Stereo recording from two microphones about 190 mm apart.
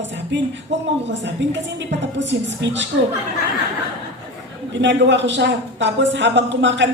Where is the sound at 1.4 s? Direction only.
70° right (ahead or behind).